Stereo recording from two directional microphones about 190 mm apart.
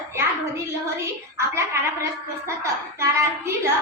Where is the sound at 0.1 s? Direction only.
15° right (ahead or behind).